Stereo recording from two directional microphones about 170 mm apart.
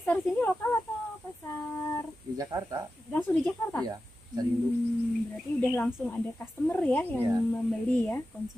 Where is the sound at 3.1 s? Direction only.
10° left (ahead or behind).